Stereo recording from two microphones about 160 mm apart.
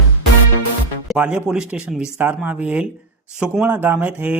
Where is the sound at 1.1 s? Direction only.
5° right (ahead or behind).